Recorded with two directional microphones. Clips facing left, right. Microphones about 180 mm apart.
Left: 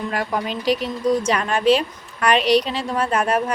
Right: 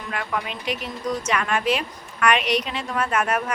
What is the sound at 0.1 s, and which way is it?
A woman's voice, 35° left (ahead or behind).